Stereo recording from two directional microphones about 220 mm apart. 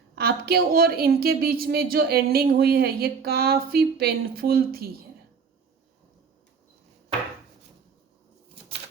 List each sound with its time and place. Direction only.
0.2 s a woman's voice: 45° right (ahead or behind)